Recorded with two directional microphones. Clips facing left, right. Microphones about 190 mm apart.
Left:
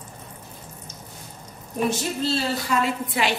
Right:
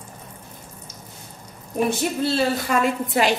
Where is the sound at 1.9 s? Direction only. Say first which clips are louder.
Right 1 dB; 55° right (ahead or behind).